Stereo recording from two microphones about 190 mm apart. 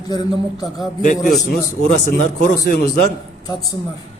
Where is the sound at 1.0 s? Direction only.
40° left (ahead or behind).